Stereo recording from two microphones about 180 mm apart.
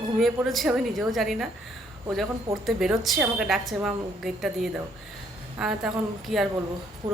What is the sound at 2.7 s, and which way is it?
Speech, centre (ahead or behind).